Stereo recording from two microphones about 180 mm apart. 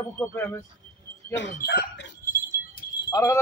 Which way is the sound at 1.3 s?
80° left.